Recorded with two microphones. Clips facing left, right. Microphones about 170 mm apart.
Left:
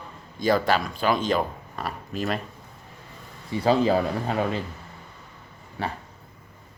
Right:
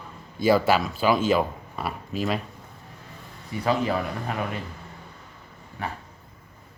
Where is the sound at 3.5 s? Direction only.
30° left (ahead or behind).